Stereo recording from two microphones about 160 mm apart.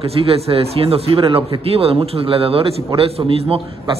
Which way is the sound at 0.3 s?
35° right (ahead or behind).